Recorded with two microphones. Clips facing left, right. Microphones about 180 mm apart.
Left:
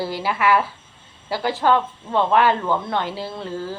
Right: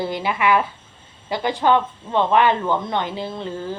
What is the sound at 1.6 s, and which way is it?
Speech, 10° right (ahead or behind).